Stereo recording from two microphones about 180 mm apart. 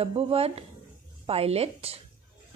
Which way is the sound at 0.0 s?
35° right (ahead or behind).